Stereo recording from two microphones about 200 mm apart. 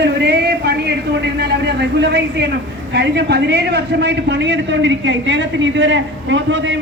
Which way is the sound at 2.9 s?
55° right (ahead or behind).